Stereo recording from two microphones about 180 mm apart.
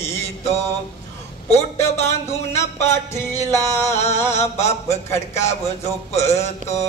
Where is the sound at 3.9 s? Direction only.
35° left (ahead or behind).